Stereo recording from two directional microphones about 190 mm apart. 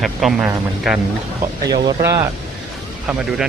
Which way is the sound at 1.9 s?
20° right (ahead or behind).